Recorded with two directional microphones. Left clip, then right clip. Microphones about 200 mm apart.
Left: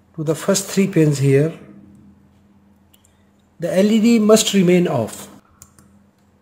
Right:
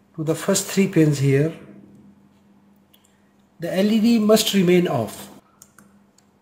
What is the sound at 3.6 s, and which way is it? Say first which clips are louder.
Speech: left 5 dB; 25° left (ahead or behind).